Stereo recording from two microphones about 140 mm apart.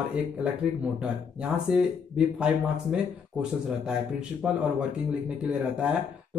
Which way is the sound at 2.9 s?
5° right (ahead or behind).